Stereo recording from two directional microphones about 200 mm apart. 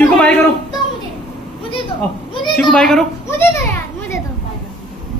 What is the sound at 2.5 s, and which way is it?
Children playing, 5° left (ahead or behind).